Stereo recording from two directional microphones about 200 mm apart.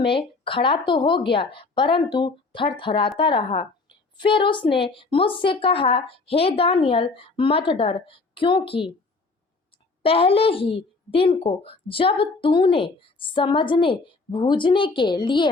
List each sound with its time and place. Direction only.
0.0 s a woman's voice: 25° left (ahead or behind)
10.0 s a woman's voice: 30° left (ahead or behind)